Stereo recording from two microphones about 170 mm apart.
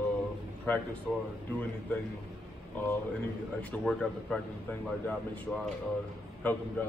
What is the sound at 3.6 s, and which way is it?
Speech, 5° left (ahead or behind).